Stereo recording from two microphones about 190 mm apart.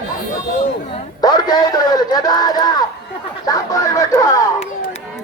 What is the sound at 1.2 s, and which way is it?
A man's voice, 20° left (ahead or behind).